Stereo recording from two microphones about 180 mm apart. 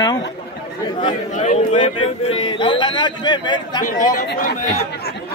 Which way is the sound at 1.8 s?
30° left (ahead or behind).